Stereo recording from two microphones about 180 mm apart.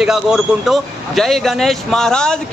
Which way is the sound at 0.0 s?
5° right (ahead or behind).